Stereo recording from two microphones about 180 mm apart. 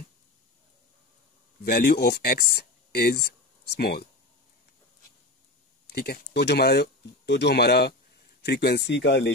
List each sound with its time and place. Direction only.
1.6 s speech: 60° left (ahead or behind)
5.9 s speech: 60° left (ahead or behind)